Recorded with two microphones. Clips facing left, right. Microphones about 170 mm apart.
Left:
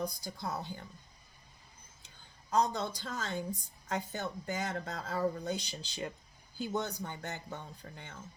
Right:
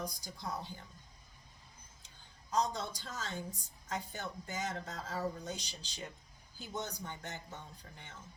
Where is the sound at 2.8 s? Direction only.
75° left (ahead or behind).